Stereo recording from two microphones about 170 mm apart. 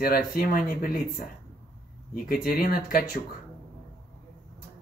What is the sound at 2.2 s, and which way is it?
Speech, 60° left (ahead or behind).